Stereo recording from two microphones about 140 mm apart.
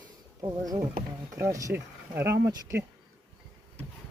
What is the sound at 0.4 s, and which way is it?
Speech, 25° right (ahead or behind).